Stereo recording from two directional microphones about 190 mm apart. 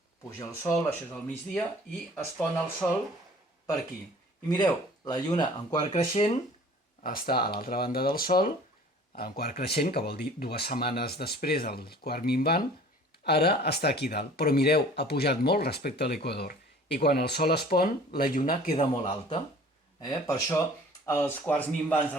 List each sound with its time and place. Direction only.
0.3 s speech: 15° left (ahead or behind)
2.8 s speech: 5° left (ahead or behind)
4.4 s speech: 20° left (ahead or behind)
7.0 s speech: 50° left (ahead or behind)
18.8 s a man's voice: 30° left (ahead or behind)
20.0 s speech: 20° left (ahead or behind)